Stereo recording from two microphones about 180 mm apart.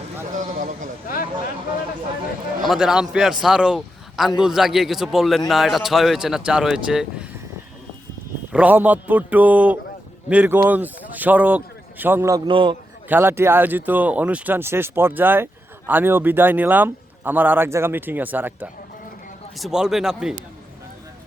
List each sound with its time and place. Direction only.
0.3 s a sound: 45° right (ahead or behind)
1.0 s a sound: 55° left (ahead or behind)
2.6 s a man's voice: 5° right (ahead or behind)
8.5 s speech: 10° right (ahead or behind)
12.5 s a man's voice: 25° right (ahead or behind)
13.1 s speech: 10° right (ahead or behind)